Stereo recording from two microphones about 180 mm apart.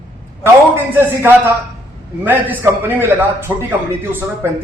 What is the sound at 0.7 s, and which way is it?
A man's voice, 10° right (ahead or behind).